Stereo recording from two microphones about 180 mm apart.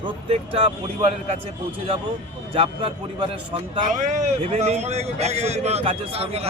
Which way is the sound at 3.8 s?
45° right (ahead or behind).